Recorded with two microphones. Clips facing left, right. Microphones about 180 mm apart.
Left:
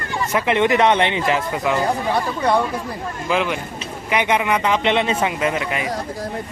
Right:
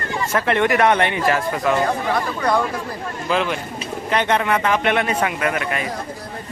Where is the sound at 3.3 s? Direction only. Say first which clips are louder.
Even; 15° left (ahead or behind).